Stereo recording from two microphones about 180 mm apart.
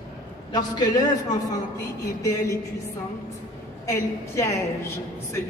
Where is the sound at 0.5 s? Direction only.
20° left (ahead or behind).